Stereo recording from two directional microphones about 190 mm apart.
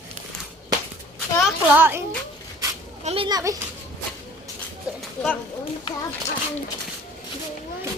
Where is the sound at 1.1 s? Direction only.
5° right (ahead or behind).